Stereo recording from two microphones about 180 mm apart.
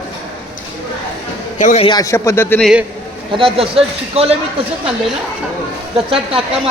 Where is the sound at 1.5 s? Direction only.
45° left (ahead or behind).